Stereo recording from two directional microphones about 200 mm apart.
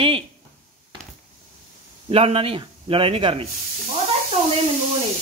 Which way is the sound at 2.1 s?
30° right (ahead or behind).